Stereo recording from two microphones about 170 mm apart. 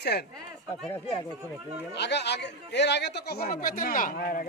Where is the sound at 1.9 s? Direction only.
90° left.